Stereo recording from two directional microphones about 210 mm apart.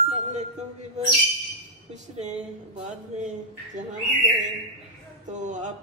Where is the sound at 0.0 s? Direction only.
35° right (ahead or behind).